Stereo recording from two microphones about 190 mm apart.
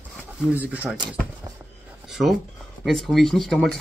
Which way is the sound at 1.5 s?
20° right (ahead or behind).